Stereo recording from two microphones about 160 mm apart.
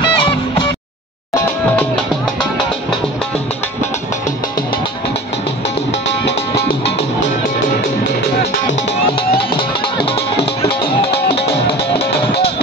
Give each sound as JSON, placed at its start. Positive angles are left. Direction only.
{"t": 0.0, "sound": "music", "side_deg": 30}
{"t": 9.6, "sound": "music", "side_deg": 35}